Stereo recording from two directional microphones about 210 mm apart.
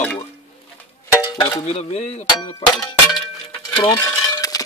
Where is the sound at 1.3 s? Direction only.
20° left (ahead or behind).